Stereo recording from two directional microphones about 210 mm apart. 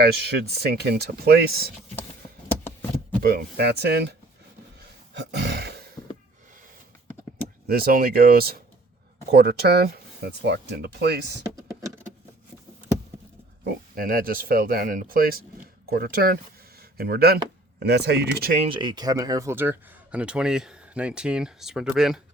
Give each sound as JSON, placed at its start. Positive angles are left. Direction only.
{"t": 0.0, "sound": "speech", "side_deg": -50}
{"t": 3.2, "sound": "speech", "side_deg": -50}
{"t": 5.1, "sound": "a sound", "side_deg": -55}
{"t": 6.0, "sound": "snort", "side_deg": 15}
{"t": 7.7, "sound": "speech", "side_deg": -45}
{"t": 13.7, "sound": "speech", "side_deg": -45}
{"t": 18.6, "sound": "speech", "side_deg": -25}